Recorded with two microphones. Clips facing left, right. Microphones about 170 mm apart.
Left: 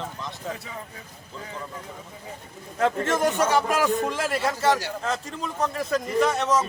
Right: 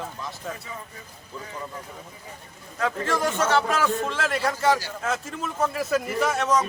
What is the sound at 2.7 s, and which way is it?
A man's voice, 20° left (ahead or behind).